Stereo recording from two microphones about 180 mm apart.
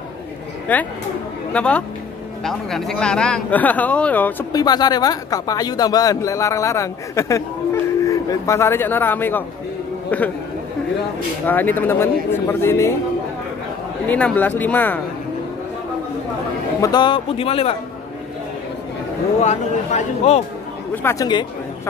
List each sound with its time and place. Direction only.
0.7 s speech: 10° left (ahead or behind)
4.5 s speech: 20° left (ahead or behind)
11.4 s speech: 10° left (ahead or behind)
14.0 s speech: 10° left (ahead or behind)
16.8 s speech: 25° left (ahead or behind)
19.4 s speech: 40° left (ahead or behind)
20.9 s speech: 15° left (ahead or behind)